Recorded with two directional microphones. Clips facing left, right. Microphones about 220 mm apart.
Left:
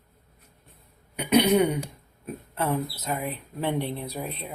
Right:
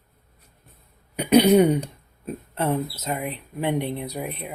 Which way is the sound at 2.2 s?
25° right (ahead or behind).